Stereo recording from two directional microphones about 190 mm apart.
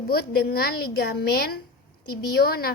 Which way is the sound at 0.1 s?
55° left (ahead or behind).